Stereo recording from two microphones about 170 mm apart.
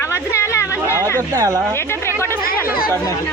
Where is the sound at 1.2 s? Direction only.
20° right (ahead or behind).